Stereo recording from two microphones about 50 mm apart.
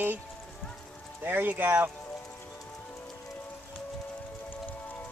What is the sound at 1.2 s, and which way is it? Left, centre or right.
Speech, right.